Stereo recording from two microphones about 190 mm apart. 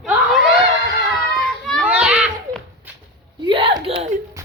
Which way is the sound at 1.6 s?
Centre (ahead or behind).